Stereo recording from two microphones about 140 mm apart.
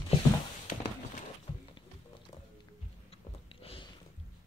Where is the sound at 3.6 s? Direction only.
45° left (ahead or behind).